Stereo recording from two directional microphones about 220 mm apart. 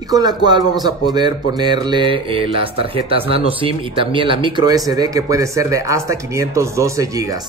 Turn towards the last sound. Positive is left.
turn(degrees=-15)  # may be behind; listen again after turning